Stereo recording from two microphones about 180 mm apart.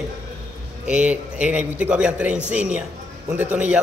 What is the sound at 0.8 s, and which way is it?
A man's voice, 5° right (ahead or behind).